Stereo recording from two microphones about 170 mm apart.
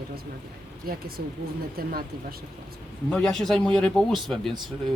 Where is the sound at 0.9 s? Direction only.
60° right (ahead or behind).